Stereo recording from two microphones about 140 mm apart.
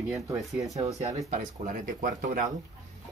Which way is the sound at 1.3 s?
75° right (ahead or behind).